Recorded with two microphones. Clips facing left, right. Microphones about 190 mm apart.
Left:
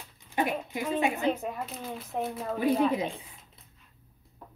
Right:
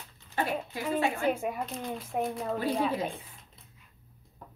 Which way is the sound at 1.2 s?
10° right (ahead or behind).